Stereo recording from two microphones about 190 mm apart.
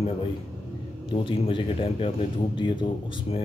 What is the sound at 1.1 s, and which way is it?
Speech, 25° left (ahead or behind).